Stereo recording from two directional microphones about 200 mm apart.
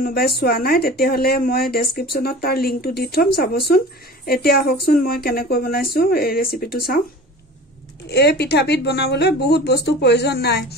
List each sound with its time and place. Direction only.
0.0 s speech: 50° left (ahead or behind)
8.1 s speech: 55° left (ahead or behind)